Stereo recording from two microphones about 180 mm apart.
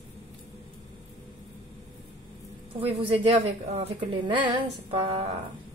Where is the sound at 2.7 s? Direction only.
30° right (ahead or behind).